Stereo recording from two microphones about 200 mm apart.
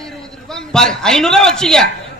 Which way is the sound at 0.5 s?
5° left (ahead or behind).